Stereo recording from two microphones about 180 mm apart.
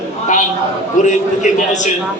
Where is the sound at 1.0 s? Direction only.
45° left (ahead or behind).